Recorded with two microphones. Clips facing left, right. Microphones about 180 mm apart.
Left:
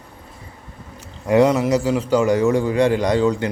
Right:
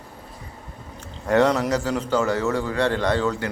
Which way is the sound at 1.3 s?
10° left (ahead or behind).